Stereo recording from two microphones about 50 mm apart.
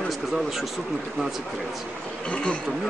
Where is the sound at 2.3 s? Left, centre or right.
Left.